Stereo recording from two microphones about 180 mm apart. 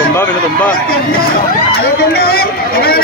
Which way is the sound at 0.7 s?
55° left (ahead or behind).